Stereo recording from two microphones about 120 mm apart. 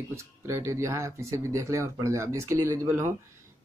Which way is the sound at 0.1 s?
25° right (ahead or behind).